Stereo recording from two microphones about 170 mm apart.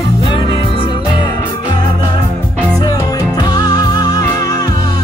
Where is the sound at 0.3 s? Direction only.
30° left (ahead or behind).